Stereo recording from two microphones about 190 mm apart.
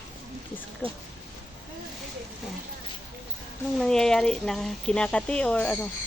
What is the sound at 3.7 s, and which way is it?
Speech, 5° left (ahead or behind).